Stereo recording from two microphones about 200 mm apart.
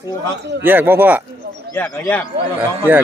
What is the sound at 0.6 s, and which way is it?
Speech, 10° right (ahead or behind).